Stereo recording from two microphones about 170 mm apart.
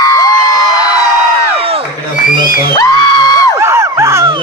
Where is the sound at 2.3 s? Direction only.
55° left (ahead or behind).